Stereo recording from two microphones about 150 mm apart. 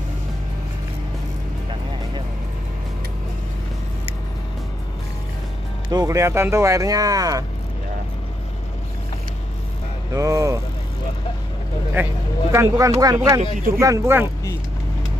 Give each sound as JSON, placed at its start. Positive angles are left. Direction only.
{"t": 5.9, "sound": "speech", "side_deg": -25}
{"t": 10.1, "sound": "speech", "side_deg": -20}
{"t": 11.9, "sound": "speech", "side_deg": -15}